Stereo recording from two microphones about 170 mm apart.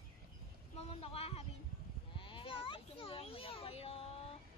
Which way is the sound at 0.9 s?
35° left (ahead or behind).